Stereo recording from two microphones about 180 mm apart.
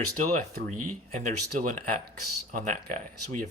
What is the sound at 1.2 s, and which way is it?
Speech, 45° right (ahead or behind).